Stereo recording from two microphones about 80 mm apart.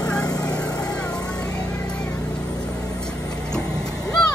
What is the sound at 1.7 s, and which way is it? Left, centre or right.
Vehicle, centre.